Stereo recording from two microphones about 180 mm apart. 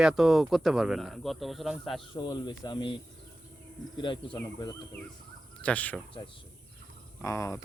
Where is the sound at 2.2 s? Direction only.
25° left (ahead or behind).